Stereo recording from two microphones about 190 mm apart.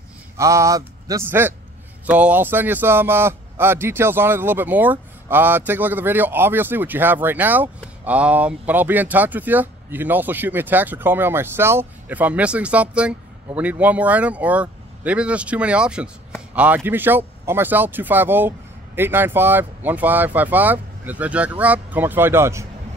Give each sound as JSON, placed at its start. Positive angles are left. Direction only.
{"t": 0.4, "sound": "a man's voice", "side_deg": -15}